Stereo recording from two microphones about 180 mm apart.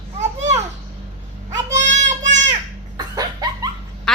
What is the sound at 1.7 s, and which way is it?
Child singing, 40° right (ahead or behind).